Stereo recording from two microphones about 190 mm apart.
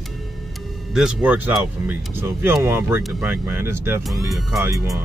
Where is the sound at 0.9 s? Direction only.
5° right (ahead or behind).